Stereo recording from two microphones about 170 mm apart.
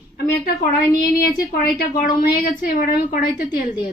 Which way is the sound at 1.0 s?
60° left (ahead or behind).